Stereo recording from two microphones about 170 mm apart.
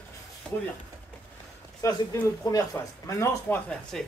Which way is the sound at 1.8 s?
20° left (ahead or behind).